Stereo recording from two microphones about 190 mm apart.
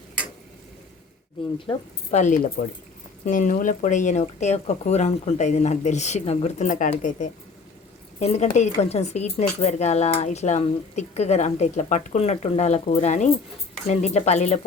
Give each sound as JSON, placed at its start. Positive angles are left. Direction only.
{"t": 1.5, "sound": "speech", "side_deg": 30}